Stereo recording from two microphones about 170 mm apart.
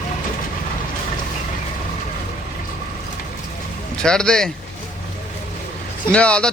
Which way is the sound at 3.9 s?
5° left (ahead or behind).